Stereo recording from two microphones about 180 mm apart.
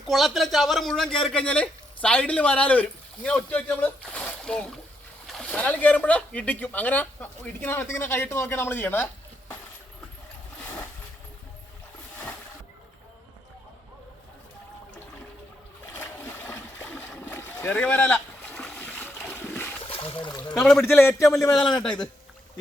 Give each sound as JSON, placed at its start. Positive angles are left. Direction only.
{"t": 0.1, "sound": "a man's voice", "side_deg": 0}
{"t": 16.0, "sound": "boat", "side_deg": 10}
{"t": 19.9, "sound": "a sound", "side_deg": 30}
{"t": 20.5, "sound": "speech", "side_deg": 5}